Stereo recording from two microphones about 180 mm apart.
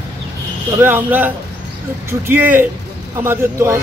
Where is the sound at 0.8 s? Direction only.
10° right (ahead or behind).